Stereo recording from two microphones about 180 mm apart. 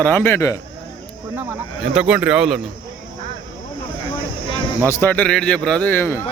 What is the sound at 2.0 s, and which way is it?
Speech, 5° right (ahead or behind).